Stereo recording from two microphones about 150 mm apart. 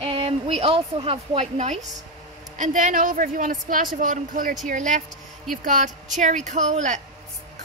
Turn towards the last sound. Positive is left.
turn(degrees=-55)  # may be behind; listen again after turning